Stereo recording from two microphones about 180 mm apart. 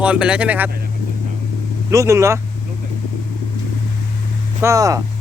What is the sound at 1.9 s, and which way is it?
Speech, 15° right (ahead or behind).